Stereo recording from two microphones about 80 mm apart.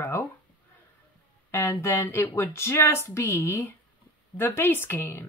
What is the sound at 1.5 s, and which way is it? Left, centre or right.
Speech, left.